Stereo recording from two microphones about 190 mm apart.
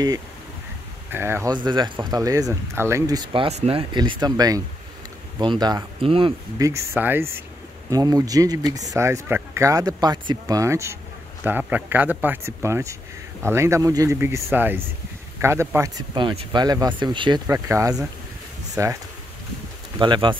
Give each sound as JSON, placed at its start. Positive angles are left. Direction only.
{"t": 1.1, "sound": "speech", "side_deg": -10}
{"t": 3.4, "sound": "speech", "side_deg": -30}
{"t": 6.7, "sound": "speech", "side_deg": -10}
{"t": 20.0, "sound": "speech", "side_deg": -25}